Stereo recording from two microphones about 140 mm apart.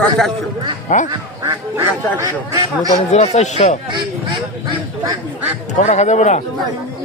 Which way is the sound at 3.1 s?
55° left (ahead or behind).